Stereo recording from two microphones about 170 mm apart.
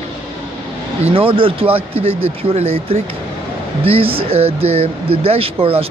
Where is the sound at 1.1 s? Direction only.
30° right (ahead or behind).